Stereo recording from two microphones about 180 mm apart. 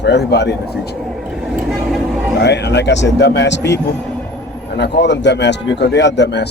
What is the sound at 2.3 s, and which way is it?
A man's voice, 70° left (ahead or behind).